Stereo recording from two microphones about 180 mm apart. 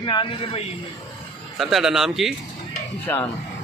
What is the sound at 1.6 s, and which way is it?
Speech, centre (ahead or behind).